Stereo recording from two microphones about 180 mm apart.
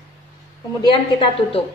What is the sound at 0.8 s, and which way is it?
Speech, 30° left (ahead or behind).